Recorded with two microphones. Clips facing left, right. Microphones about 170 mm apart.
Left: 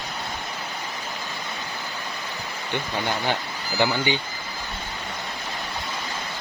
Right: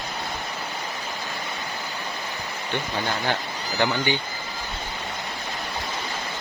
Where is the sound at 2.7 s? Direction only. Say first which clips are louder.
Left 1 dB; 15° left (ahead or behind).